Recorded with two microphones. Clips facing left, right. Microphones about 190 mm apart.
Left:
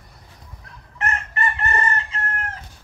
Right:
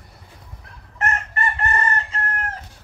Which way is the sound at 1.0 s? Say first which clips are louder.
Right 1 dB; 45° right (ahead or behind).